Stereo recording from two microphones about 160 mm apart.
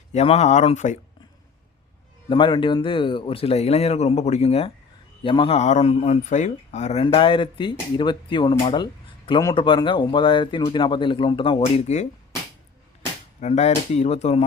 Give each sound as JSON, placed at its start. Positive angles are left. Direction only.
{"t": 0.1, "sound": "speech", "side_deg": 45}
{"t": 2.3, "sound": "speech", "side_deg": 30}
{"t": 7.0, "sound": "speech", "side_deg": 30}
{"t": 13.4, "sound": "speech", "side_deg": 45}